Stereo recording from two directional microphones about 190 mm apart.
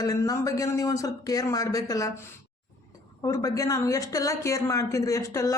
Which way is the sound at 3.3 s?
15° left (ahead or behind).